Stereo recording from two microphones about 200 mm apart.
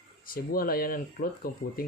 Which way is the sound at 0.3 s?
45° left (ahead or behind).